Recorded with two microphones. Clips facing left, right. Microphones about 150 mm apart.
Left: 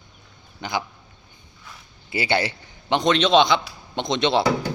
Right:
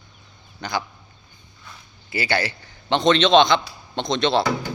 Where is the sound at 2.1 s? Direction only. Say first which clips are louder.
Left 1 dB; 25° left (ahead or behind).